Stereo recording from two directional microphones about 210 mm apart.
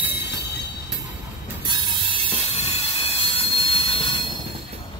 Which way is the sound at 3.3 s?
25° left (ahead or behind).